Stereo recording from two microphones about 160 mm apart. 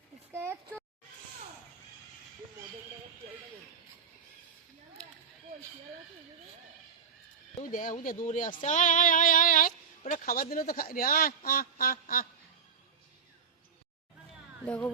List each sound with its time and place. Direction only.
7.7 s speech: 55° left (ahead or behind)
14.6 s speech: 5° left (ahead or behind)